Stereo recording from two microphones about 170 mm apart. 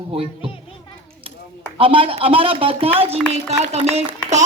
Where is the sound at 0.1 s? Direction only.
35° right (ahead or behind).